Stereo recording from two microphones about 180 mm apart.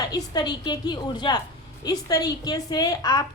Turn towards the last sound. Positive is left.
turn(degrees=20)  # may be behind; listen again after turning